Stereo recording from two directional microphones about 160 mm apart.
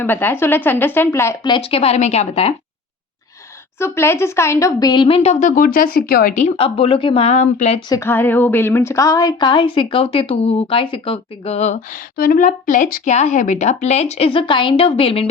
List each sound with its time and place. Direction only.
0.0 s speech: 15° left (ahead or behind)
1.5 s speech: 35° left (ahead or behind)
3.8 s speech: 15° left (ahead or behind); by 6.5 s 55° left (ahead or behind)
6.6 s speech: 35° left (ahead or behind)
7.8 s speech: 25° left (ahead or behind)
8.0 s speech: 15° left (ahead or behind); by 15.3 s 35° left (ahead or behind)